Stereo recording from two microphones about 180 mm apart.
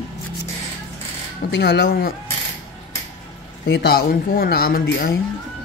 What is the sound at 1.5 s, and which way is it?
Speech, 70° left (ahead or behind).